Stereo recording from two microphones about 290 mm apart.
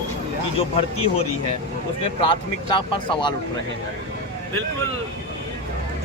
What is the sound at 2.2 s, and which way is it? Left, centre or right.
Speech, centre.